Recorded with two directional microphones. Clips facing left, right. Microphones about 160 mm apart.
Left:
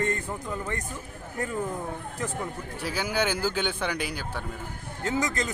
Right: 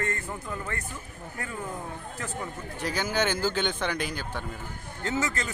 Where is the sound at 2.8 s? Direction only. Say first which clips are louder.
Even; 10° left (ahead or behind).